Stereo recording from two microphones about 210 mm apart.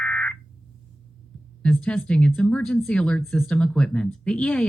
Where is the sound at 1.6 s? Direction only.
5° left (ahead or behind).